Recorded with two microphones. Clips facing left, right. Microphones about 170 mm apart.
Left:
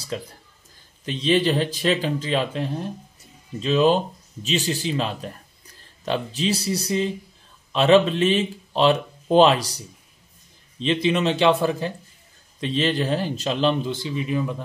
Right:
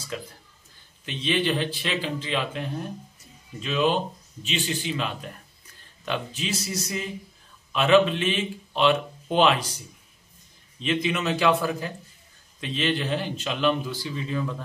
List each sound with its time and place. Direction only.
0.1 s a man's voice: 30° left (ahead or behind); by 14.6 s 15° left (ahead or behind)